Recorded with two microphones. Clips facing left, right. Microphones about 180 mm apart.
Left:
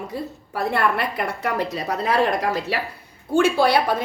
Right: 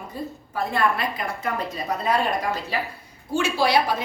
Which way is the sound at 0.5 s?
65° left (ahead or behind).